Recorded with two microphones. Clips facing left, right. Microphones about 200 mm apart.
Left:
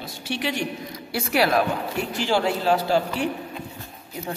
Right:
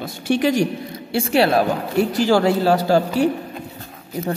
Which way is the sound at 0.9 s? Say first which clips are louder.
Right 5 dB; 25° right (ahead or behind).